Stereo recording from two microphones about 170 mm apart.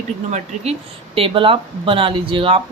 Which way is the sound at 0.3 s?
40° right (ahead or behind).